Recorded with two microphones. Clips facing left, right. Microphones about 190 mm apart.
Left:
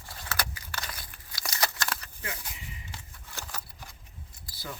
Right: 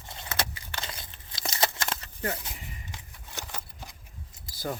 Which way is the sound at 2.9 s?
20° right (ahead or behind).